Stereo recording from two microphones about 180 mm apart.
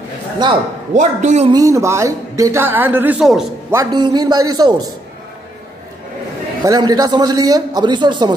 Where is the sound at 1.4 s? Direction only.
20° right (ahead or behind); by 3.5 s centre (ahead or behind).